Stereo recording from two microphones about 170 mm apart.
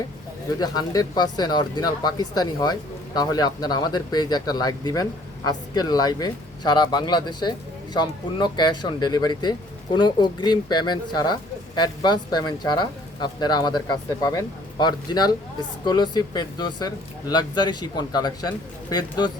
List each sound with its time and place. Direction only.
0.6 s speech: 25° left (ahead or behind)